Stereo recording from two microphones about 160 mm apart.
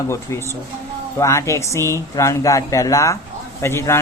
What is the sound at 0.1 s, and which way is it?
Speech, 15° left (ahead or behind).